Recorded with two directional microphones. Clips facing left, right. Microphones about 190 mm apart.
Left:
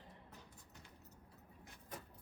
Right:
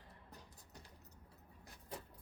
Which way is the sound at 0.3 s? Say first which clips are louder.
Even; 35° right (ahead or behind).